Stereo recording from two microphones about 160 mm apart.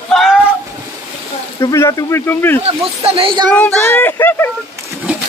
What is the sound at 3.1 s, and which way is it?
Speech, 35° right (ahead or behind).